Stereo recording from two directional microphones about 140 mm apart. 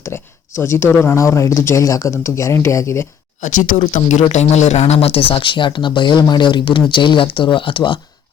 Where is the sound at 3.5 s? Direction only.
65° left (ahead or behind); by 8.0 s 35° left (ahead or behind).